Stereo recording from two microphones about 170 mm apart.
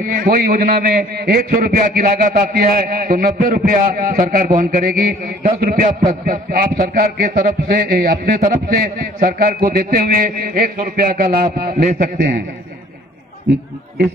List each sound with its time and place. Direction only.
0.0 s a man's voice: 60° right (ahead or behind)